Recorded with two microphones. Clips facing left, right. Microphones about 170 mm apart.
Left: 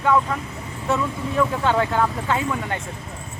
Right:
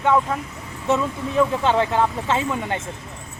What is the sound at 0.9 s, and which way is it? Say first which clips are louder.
Speech: right 2 dB; 20° right (ahead or behind).